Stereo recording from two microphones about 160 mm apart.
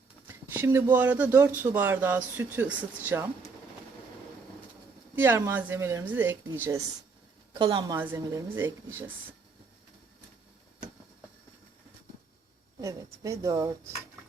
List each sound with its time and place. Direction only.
0.3 s speech: 15° right (ahead or behind)
5.1 s speech: 15° right (ahead or behind)
7.5 s speech: 30° right (ahead or behind)
12.8 s speech: 20° right (ahead or behind)